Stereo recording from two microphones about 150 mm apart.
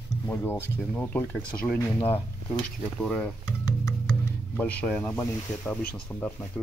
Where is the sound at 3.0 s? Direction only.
5° left (ahead or behind).